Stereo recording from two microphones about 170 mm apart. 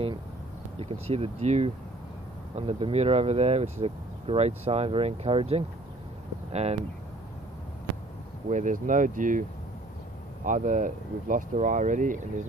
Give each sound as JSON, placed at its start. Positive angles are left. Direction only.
{"t": 0.7, "sound": "speech", "side_deg": -35}
{"t": 8.5, "sound": "speech", "side_deg": -45}